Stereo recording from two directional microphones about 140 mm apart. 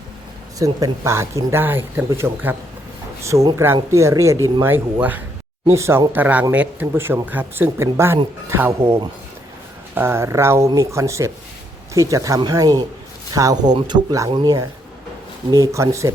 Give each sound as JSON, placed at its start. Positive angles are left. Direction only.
{"t": 0.6, "sound": "speech", "side_deg": -20}